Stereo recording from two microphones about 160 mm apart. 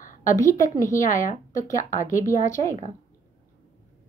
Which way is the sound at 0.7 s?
20° left (ahead or behind).